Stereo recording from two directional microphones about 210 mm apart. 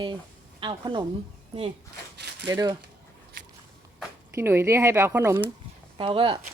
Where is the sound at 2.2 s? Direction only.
55° right (ahead or behind).